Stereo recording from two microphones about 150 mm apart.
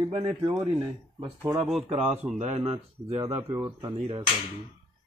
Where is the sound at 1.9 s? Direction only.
45° right (ahead or behind).